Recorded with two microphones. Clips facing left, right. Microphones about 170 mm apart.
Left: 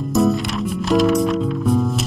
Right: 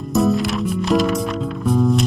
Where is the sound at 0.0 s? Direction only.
Centre (ahead or behind).